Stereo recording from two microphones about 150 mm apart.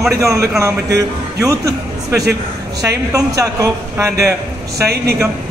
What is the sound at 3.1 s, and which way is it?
A man's voice, 25° right (ahead or behind).